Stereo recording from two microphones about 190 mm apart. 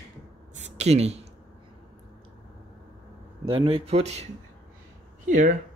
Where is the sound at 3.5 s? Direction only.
30° right (ahead or behind).